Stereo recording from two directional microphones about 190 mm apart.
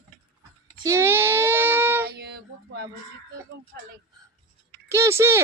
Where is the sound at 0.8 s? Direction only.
15° right (ahead or behind).